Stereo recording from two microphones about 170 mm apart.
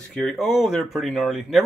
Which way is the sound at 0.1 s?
Centre (ahead or behind).